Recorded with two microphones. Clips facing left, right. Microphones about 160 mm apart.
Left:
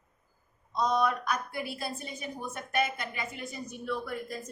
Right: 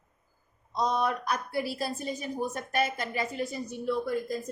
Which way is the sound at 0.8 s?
30° right (ahead or behind).